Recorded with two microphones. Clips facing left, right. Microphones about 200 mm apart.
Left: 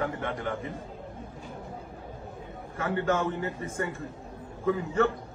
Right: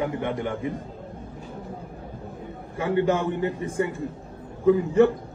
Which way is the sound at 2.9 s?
15° right (ahead or behind).